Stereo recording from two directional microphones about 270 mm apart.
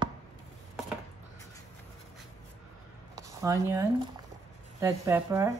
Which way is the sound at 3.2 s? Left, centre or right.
Centre.